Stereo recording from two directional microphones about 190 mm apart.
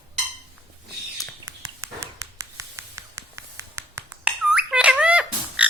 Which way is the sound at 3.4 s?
15° right (ahead or behind).